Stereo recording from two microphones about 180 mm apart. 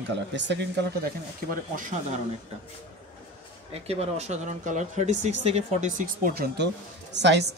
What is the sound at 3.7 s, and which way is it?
Speech, 35° right (ahead or behind).